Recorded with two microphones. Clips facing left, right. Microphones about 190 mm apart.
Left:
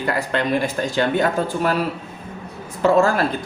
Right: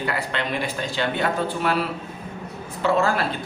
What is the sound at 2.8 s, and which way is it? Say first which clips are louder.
Speech: left 5 dB; 45° left (ahead or behind).